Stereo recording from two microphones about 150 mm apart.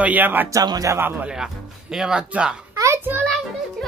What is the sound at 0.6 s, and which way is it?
Speech, 25° right (ahead or behind).